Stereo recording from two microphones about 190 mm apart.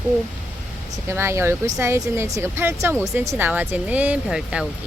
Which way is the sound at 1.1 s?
15° right (ahead or behind).